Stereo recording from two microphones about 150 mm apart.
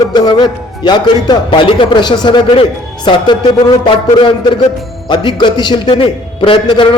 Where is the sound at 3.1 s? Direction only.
30° left (ahead or behind).